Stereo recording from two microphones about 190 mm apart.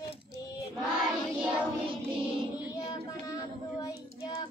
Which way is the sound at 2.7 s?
20° left (ahead or behind).